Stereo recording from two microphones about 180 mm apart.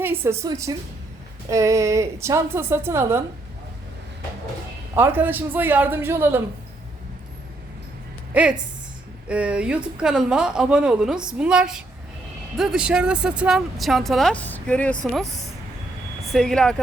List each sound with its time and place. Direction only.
0.0 s a woman's voice: 10° right (ahead or behind)
4.9 s a woman's voice: 10° right (ahead or behind)
8.3 s a woman's voice: 5° right (ahead or behind)
16.3 s speech: centre (ahead or behind)